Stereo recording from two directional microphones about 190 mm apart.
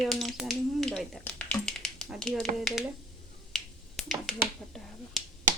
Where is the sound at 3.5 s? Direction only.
Centre (ahead or behind).